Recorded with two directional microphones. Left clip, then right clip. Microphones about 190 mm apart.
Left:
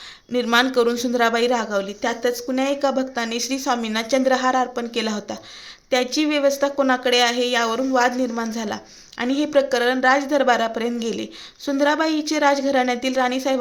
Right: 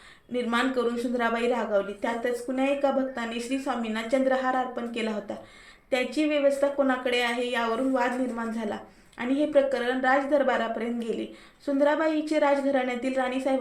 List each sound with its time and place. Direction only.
0.3 s a woman's voice: 50° left (ahead or behind)